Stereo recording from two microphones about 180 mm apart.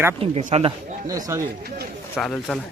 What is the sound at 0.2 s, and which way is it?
Speech, 35° right (ahead or behind).